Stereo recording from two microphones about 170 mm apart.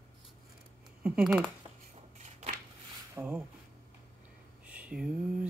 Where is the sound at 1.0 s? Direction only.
5° right (ahead or behind).